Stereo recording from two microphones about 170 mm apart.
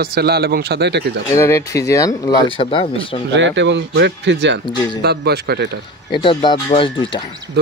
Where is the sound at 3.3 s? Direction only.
90° right.